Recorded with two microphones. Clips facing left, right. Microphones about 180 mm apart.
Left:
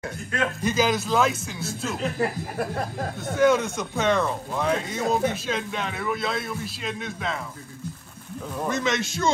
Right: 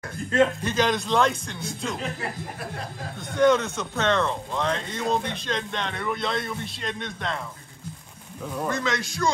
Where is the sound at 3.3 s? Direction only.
10° left (ahead or behind).